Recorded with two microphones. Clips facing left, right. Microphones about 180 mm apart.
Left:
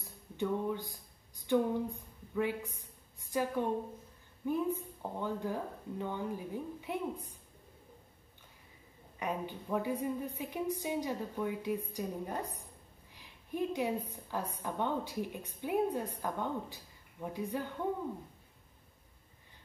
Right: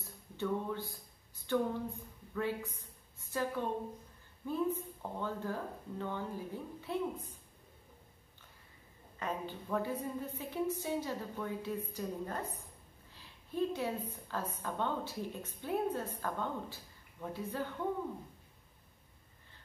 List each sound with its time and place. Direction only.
0.0 s a sound: 15° left (ahead or behind)
2.3 s a woman's voice: 15° left (ahead or behind)
9.2 s a woman's voice: 15° left (ahead or behind)